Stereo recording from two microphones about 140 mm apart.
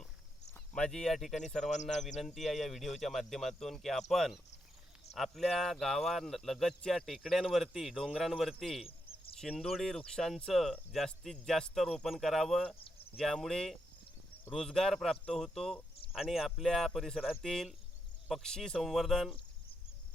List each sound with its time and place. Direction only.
0.5 s speech: 5° left (ahead or behind)
1.7 s speech: 55° left (ahead or behind)
2.2 s speech: centre (ahead or behind)